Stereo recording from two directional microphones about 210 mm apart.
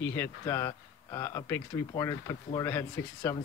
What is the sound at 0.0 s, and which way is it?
Speech, 10° left (ahead or behind).